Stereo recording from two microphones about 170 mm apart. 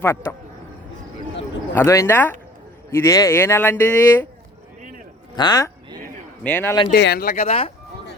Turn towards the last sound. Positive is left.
turn(degrees=35)  # may be behind; listen again after turning